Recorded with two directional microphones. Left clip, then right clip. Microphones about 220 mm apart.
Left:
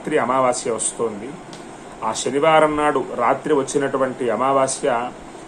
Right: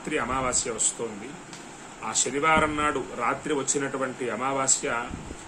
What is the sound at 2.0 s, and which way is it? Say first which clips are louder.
A man's voice: left 7 dB; centre (ahead or behind).